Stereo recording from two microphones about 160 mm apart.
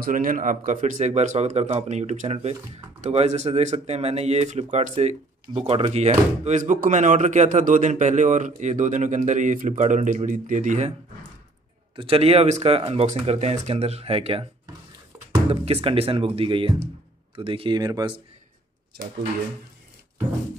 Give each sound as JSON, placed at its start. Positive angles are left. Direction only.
{"t": 0.0, "sound": "speech", "side_deg": -60}
{"t": 11.9, "sound": "speech", "side_deg": -35}
{"t": 15.5, "sound": "speech", "side_deg": -40}